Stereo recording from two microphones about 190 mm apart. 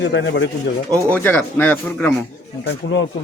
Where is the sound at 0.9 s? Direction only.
15° right (ahead or behind).